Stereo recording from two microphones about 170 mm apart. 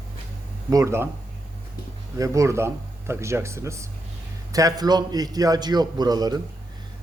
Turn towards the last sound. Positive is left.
turn(degrees=-25)  # may be behind; listen again after turning